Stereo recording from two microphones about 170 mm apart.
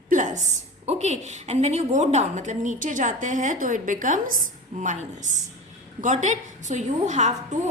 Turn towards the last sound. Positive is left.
turn(degrees=-45)  # may be behind; listen again after turning